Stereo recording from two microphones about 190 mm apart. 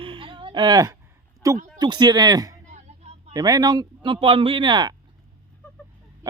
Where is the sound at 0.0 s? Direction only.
25° right (ahead or behind).